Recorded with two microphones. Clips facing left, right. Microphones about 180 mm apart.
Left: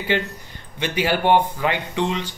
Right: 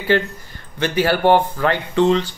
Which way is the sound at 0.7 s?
15° left (ahead or behind).